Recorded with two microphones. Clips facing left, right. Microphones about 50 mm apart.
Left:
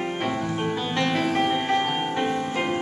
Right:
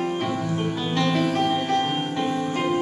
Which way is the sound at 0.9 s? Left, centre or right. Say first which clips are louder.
Right 2 dB; centre.